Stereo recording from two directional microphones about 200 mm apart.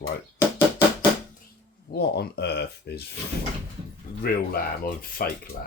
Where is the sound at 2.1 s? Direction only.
55° left (ahead or behind).